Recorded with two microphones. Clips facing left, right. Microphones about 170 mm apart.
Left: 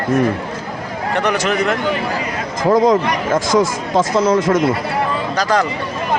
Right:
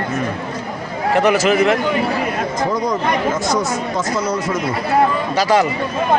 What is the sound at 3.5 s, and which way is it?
Speech, 90° left.